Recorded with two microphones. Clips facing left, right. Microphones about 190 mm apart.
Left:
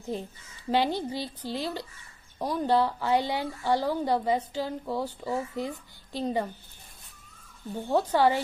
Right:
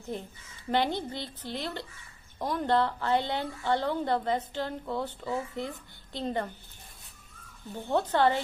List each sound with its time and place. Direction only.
0.1 s a woman's voice: 15° left (ahead or behind)
7.7 s a woman's voice: 10° left (ahead or behind)